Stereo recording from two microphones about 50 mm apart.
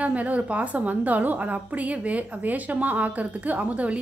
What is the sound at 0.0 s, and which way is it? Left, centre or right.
A woman's voice, right.